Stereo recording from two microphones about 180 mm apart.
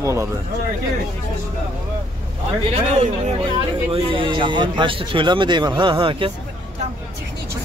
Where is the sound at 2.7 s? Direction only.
35° right (ahead or behind).